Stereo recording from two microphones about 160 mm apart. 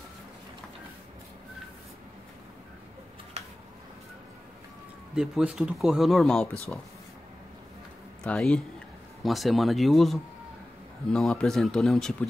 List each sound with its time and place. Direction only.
3.4 s a sound: 40° right (ahead or behind)
5.1 s speech: 5° right (ahead or behind)
8.2 s speech: 5° left (ahead or behind)